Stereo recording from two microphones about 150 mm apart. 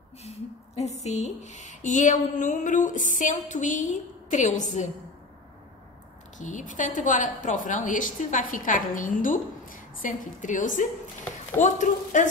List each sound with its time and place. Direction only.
0.2 s speech: 45° left (ahead or behind)
6.3 s speech: 55° left (ahead or behind)